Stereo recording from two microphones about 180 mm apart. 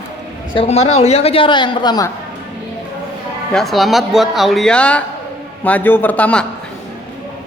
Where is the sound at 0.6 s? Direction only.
35° left (ahead or behind).